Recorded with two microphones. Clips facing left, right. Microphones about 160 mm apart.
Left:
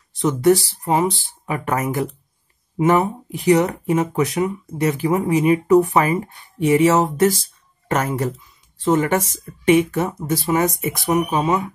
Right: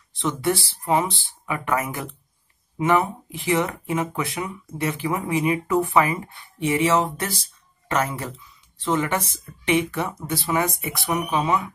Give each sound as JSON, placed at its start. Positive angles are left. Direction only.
{"t": 0.1, "sound": "speech", "side_deg": 45}